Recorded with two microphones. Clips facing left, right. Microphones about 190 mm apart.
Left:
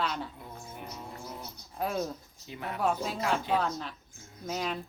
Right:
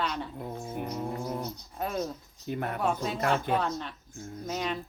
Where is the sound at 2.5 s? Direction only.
50° right (ahead or behind).